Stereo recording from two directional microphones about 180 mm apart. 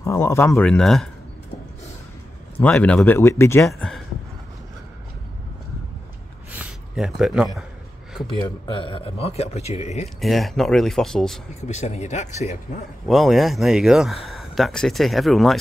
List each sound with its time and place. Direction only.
0.0 s speech: 15° left (ahead or behind)
2.5 s speech: 10° left (ahead or behind)
3.6 s speech: centre (ahead or behind)
6.6 s a sound: 5° right (ahead or behind)
8.4 s speech: 25° left (ahead or behind)
10.2 s speech: centre (ahead or behind)
11.6 s speech: 40° left (ahead or behind)
13.0 s speech: centre (ahead or behind)